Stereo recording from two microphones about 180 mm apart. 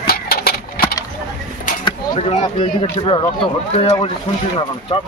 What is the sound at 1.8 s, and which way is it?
Speech, 35° left (ahead or behind).